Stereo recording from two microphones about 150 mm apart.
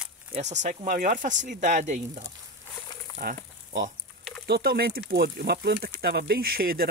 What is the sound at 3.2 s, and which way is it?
Speech, 70° right (ahead or behind).